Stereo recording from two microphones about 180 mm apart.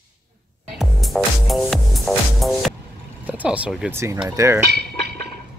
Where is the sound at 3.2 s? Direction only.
10° right (ahead or behind).